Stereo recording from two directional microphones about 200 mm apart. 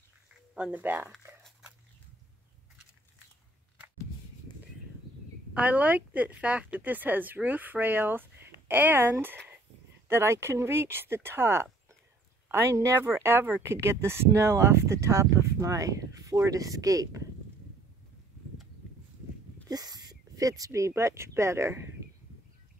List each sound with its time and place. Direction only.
0.6 s speech: 5° right (ahead or behind)
1.1 s a sound: centre (ahead or behind)
5.5 s speech: 5° right (ahead or behind)
19.7 s speech: 20° right (ahead or behind)